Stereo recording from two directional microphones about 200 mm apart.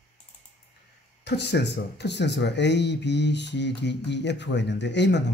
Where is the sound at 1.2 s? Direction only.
60° left (ahead or behind).